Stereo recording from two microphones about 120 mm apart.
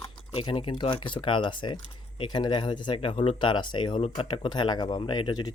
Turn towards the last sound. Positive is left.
turn(degrees=40)  # may be behind; listen again after turning